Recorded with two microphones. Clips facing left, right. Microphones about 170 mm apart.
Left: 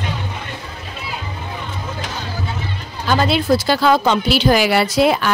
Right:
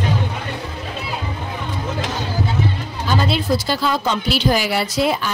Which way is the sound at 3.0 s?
70° left (ahead or behind).